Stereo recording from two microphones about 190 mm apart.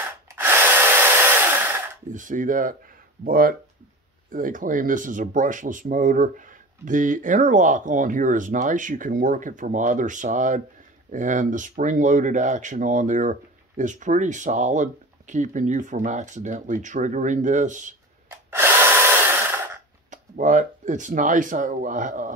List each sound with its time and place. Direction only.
0.3 s drill: 10° right (ahead or behind)
2.0 s speech: 45° right (ahead or behind)
18.5 s a sound: 10° right (ahead or behind)
20.1 s speech: 40° right (ahead or behind)